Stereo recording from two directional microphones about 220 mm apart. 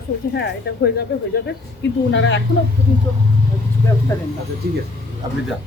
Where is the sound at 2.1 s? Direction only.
55° left (ahead or behind).